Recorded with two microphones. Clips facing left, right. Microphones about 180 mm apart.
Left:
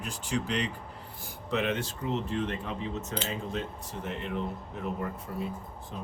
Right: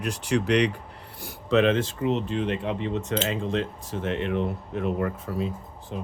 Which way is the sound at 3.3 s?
90° right.